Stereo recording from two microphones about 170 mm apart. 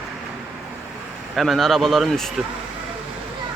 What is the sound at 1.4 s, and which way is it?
Speech, centre (ahead or behind).